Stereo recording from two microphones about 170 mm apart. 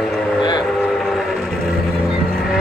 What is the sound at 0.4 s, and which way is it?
Train, 25° left (ahead or behind).